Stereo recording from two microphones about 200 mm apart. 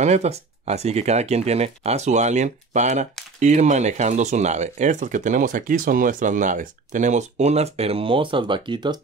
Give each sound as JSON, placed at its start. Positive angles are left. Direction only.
{"t": 0.0, "sound": "speech", "side_deg": -35}